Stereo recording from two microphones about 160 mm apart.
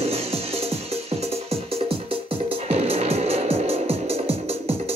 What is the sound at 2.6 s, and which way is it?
Music, 40° right (ahead or behind).